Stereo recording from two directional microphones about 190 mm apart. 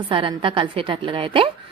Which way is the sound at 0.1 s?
25° right (ahead or behind).